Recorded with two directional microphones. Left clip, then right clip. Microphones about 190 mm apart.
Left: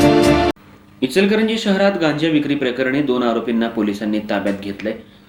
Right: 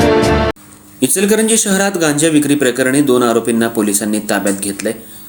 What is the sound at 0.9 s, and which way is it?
Speech, 50° right (ahead or behind).